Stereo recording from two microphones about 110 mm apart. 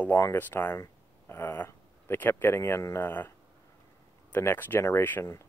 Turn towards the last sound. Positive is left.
turn(degrees=20)  # may be behind; listen again after turning